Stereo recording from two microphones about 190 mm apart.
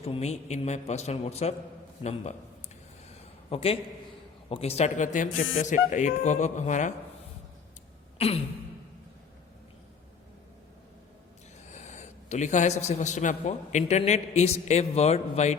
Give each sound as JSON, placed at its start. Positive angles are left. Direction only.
{"t": 0.0, "sound": "a man's voice", "side_deg": 35}
{"t": 3.1, "sound": "a sound", "side_deg": 35}
{"t": 4.4, "sound": "a man's voice", "side_deg": 30}
{"t": 11.7, "sound": "a man's voice", "side_deg": 40}